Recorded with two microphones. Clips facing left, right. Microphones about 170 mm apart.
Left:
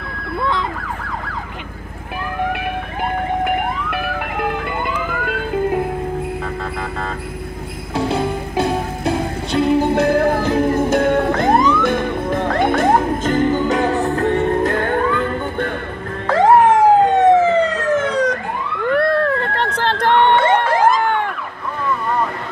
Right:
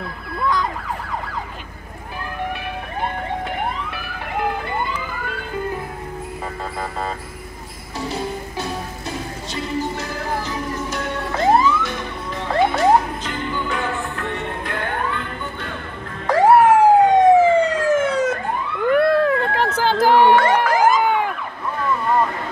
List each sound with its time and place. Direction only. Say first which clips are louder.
5.2 s music: left 8 dB; 75° left (ahead or behind)
7.9 s music: left 7 dB; 60° left (ahead or behind)
16.3 s police car: left 1 dB; 10° right (ahead or behind)
17.1 s emergency vehicle: even; 10° right (ahead or behind)
18.9 s a sound: right 1 dB; 5° right (ahead or behind)
20.9 s emergency vehicle: even; 5° right (ahead or behind)